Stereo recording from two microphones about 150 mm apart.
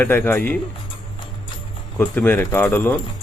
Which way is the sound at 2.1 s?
10° left (ahead or behind).